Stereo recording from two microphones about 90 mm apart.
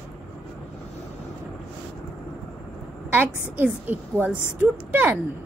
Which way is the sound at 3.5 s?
20° right (ahead or behind).